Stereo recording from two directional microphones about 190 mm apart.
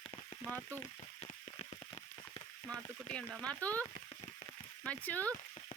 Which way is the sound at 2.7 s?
5° left (ahead or behind).